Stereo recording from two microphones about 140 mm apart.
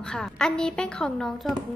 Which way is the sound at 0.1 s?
5° left (ahead or behind).